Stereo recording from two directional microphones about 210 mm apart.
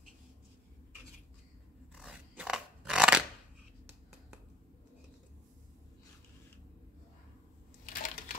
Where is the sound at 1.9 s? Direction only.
5° right (ahead or behind).